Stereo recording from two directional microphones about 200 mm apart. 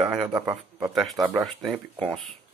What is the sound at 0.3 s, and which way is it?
Speech, 20° right (ahead or behind).